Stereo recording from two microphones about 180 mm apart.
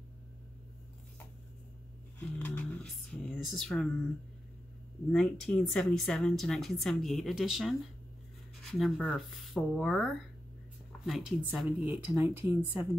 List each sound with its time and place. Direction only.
2.1 s music: 10° left (ahead or behind)
5.1 s speech: 5° left (ahead or behind)
8.7 s speech: centre (ahead or behind)
11.1 s speech: centre (ahead or behind)